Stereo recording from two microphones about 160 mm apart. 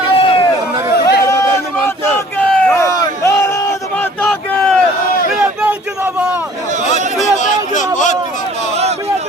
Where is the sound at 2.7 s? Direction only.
20° left (ahead or behind).